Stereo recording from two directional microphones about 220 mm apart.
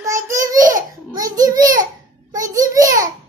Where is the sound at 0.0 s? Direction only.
15° right (ahead or behind).